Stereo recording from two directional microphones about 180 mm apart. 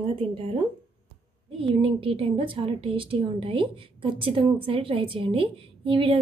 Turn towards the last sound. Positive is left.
turn(degrees=-25)  # may be behind; listen again after turning